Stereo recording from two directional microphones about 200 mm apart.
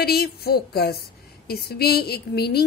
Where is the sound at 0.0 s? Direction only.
50° left (ahead or behind).